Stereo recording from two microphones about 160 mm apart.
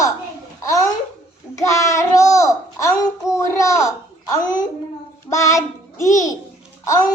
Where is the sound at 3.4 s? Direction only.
20° left (ahead or behind).